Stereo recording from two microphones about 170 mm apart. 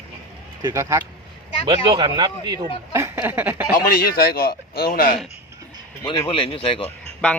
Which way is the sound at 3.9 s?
60° left (ahead or behind).